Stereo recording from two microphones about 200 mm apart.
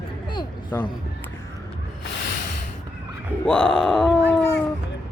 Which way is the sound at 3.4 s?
5° left (ahead or behind).